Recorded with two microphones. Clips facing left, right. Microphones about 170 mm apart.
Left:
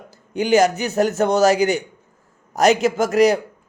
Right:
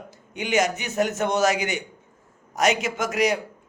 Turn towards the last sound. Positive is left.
turn(degrees=35)  # may be behind; listen again after turning